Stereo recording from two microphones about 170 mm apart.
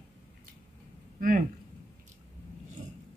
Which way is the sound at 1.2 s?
50° right (ahead or behind).